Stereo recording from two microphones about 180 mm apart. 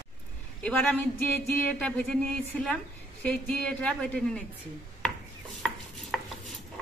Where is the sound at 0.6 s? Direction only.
5° left (ahead or behind).